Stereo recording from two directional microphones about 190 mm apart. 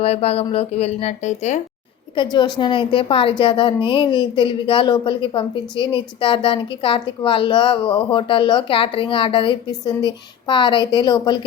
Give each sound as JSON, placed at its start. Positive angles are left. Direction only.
{"t": 0.0, "sound": "speech", "side_deg": 35}
{"t": 2.1, "sound": "a woman's voice", "side_deg": 20}